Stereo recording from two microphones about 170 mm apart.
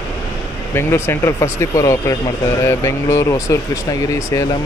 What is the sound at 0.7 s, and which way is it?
Speech, 15° left (ahead or behind).